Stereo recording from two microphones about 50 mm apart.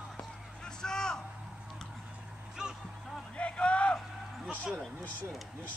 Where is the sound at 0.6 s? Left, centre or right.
Centre.